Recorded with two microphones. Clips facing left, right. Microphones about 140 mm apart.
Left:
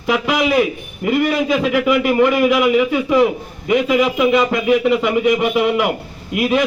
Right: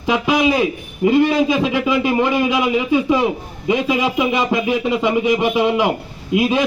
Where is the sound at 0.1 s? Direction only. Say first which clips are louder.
Even; 25° right (ahead or behind).